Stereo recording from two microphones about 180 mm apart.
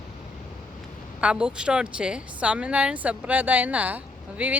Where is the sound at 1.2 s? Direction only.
5° right (ahead or behind).